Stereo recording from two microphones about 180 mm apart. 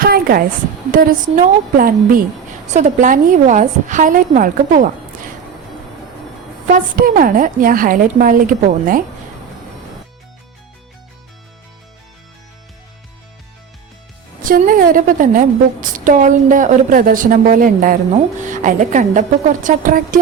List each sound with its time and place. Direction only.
0.0 s a sound: 55° right (ahead or behind)
1.4 s a woman's voice: 50° right (ahead or behind)
6.7 s a woman's voice: 50° right (ahead or behind)
14.4 s a woman's voice: 50° right (ahead or behind)